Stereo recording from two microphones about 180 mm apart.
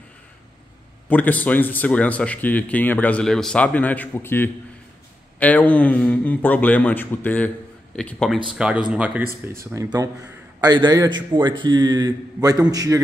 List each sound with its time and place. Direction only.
1.0 s a man's voice: 10° left (ahead or behind); by 13.0 s 20° right (ahead or behind)